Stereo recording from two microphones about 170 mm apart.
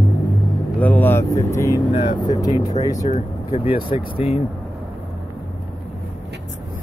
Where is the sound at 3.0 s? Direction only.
40° left (ahead or behind).